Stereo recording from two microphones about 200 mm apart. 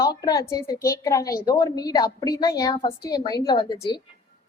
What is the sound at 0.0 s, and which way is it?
A woman's voice, 20° left (ahead or behind).